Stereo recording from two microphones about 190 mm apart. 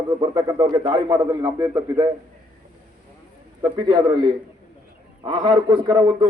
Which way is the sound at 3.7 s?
25° right (ahead or behind).